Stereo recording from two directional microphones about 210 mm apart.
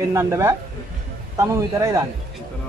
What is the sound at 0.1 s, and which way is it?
A man's voice, 15° right (ahead or behind).